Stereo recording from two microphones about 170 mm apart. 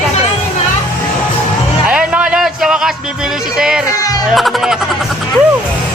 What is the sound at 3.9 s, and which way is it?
Speech, 20° left (ahead or behind).